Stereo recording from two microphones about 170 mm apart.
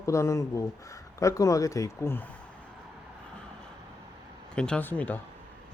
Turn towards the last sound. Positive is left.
turn(degrees=10)  # may be behind; listen again after turning